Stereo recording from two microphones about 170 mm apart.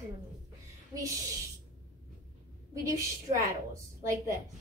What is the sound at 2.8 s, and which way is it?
A woman's voice, 20° right (ahead or behind).